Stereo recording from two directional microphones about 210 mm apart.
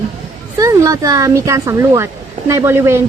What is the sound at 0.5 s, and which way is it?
A woman's voice, 15° right (ahead or behind).